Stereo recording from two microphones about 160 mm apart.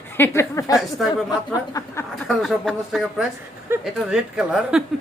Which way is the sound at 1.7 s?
20° left (ahead or behind).